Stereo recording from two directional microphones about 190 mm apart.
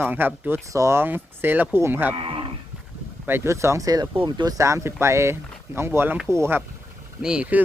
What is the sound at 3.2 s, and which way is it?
Speech, 10° right (ahead or behind).